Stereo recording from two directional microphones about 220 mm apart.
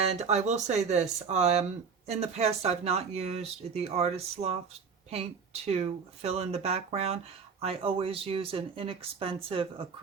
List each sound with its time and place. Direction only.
0.0 s speech: 30° right (ahead or behind)